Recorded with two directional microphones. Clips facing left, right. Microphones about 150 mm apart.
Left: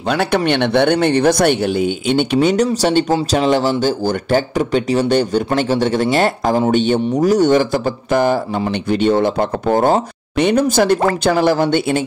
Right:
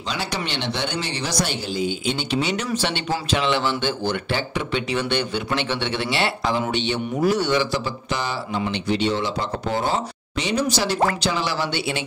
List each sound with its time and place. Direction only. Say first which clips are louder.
0.1 s speech: left 12 dB; 60° left (ahead or behind)
2.5 s speech: left 11 dB; 40° left (ahead or behind)